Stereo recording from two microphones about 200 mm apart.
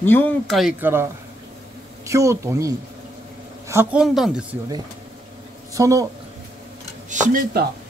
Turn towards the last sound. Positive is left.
turn(degrees=-40)  # may be behind; listen again after turning